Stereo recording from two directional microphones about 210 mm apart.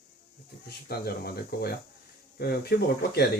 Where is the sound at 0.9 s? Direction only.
45° left (ahead or behind).